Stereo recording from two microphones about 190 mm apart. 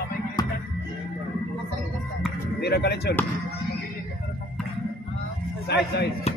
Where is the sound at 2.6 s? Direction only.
60° left (ahead or behind).